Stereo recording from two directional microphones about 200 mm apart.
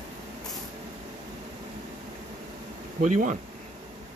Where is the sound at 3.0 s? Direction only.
40° right (ahead or behind).